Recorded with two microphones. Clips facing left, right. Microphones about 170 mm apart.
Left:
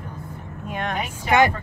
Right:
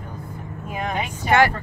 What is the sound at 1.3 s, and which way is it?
Speech, 20° left (ahead or behind).